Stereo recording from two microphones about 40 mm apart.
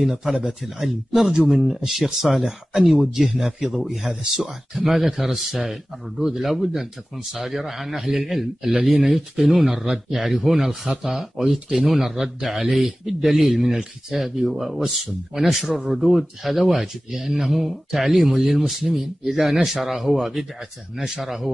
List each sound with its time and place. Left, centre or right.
0.0 s a man's voice: centre
16.8 s speech: centre
17.3 s a man's voice: centre